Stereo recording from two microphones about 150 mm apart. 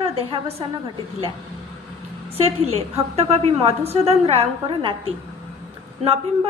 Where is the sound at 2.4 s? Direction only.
45° right (ahead or behind).